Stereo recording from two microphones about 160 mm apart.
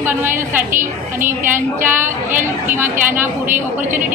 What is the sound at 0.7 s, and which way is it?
Speech, 55° right (ahead or behind).